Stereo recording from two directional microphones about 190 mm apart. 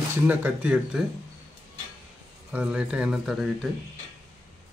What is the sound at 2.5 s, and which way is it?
Speech, 5° right (ahead or behind).